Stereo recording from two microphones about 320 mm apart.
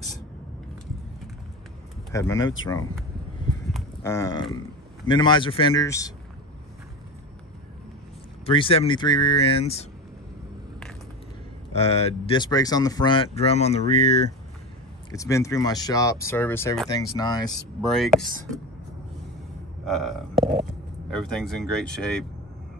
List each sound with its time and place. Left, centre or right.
2.1 s speech: centre
3.7 s a sound: centre
5.0 s speech: centre
8.5 s speech: centre
11.7 s speech: centre
15.0 s speech: centre
17.8 s speech: centre
19.8 s speech: centre